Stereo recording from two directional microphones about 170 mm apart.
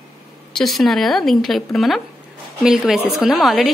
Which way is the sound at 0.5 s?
Centre (ahead or behind).